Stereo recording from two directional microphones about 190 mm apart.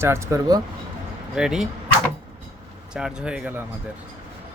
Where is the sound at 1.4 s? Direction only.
Centre (ahead or behind).